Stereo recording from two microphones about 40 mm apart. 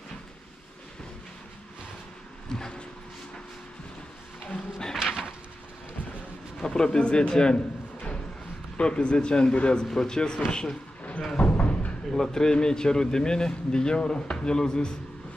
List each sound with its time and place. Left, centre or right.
2.5 s a sound: centre
4.9 s pigeon: centre
6.6 s speech: left
8.7 s speech: left
11.1 s a sound: left
12.1 s speech: centre